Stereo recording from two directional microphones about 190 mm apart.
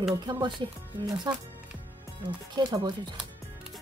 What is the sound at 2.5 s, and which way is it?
Speech, 20° right (ahead or behind).